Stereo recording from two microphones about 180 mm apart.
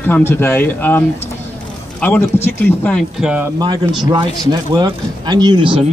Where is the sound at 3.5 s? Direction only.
25° right (ahead or behind).